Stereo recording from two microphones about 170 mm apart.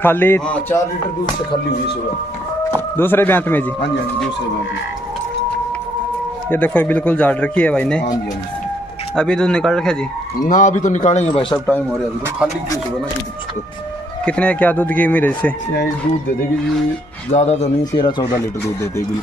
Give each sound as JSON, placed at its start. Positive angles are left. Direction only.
{"t": 0.0, "sound": "a man's voice", "side_deg": 10}
{"t": 3.0, "sound": "a man's voice", "side_deg": 10}
{"t": 6.5, "sound": "a man's voice", "side_deg": 10}
{"t": 9.1, "sound": "speech", "side_deg": 5}
{"t": 10.4, "sound": "a man's voice", "side_deg": 45}
{"t": 11.5, "sound": "a man's voice", "side_deg": 10}
{"t": 14.2, "sound": "a man's voice", "side_deg": 5}
{"t": 17.3, "sound": "speech", "side_deg": 40}